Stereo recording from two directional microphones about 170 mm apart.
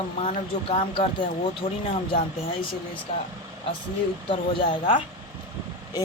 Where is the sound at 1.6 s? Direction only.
35° left (ahead or behind).